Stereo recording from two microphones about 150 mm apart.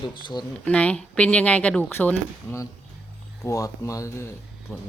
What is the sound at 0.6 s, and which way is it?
Speech, 10° left (ahead or behind).